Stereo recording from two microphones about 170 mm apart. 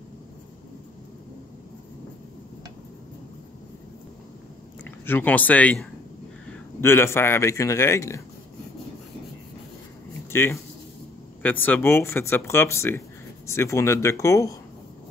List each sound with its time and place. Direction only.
4.8 s speech: 10° left (ahead or behind)
10.3 s speech: 15° left (ahead or behind)